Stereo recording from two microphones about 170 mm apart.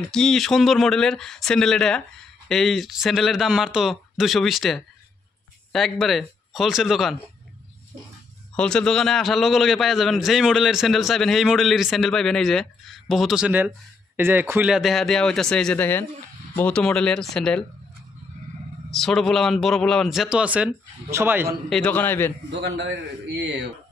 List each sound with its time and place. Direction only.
0.1 s a man's voice: 5° left (ahead or behind)
8.5 s a man's voice: 5° left (ahead or behind)
18.9 s a man's voice: centre (ahead or behind); by 21.5 s 15° right (ahead or behind)
21.6 s a man's voice: 5° left (ahead or behind)
22.5 s a man's voice: 90° right